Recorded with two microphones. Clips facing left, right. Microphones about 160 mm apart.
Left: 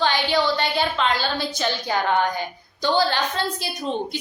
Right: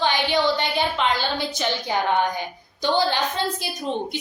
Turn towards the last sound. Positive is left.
turn(degrees=-15)  # may be behind; listen again after turning